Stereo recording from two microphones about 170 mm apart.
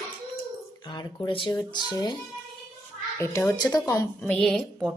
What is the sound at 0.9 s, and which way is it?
Speech, 25° left (ahead or behind).